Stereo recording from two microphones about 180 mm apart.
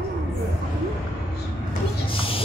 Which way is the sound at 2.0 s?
30° left (ahead or behind).